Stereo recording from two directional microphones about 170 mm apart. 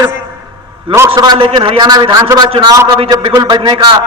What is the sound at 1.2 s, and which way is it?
A man's voice, 30° right (ahead or behind).